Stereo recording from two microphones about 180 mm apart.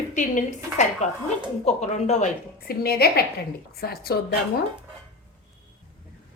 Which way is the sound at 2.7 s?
60° left (ahead or behind).